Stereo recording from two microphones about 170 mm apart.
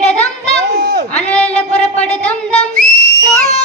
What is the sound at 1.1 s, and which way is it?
Child singing, 10° left (ahead or behind).